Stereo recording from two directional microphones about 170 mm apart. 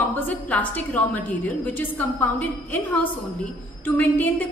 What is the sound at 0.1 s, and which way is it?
A woman's voice, 10° left (ahead or behind).